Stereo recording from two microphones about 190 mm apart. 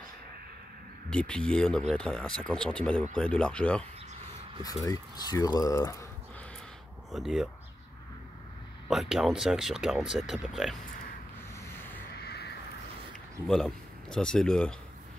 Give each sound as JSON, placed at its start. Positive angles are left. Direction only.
{"t": 1.1, "sound": "speech", "side_deg": 5}
{"t": 4.6, "sound": "speech", "side_deg": 20}
{"t": 7.1, "sound": "speech", "side_deg": 0}
{"t": 8.8, "sound": "speech", "side_deg": 0}
{"t": 12.2, "sound": "a sound", "side_deg": 60}
{"t": 13.5, "sound": "speech", "side_deg": 5}